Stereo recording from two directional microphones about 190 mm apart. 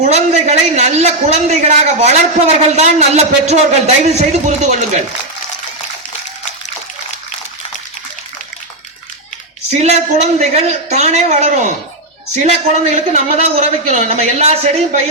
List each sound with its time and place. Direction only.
0.0 s a man's voice: 35° right (ahead or behind)
9.8 s a man's voice: 35° right (ahead or behind)